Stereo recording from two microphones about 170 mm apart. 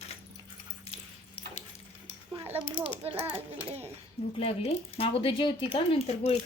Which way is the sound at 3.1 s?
10° right (ahead or behind).